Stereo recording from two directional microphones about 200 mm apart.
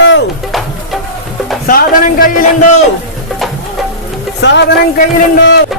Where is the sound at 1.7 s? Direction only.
45° left (ahead or behind).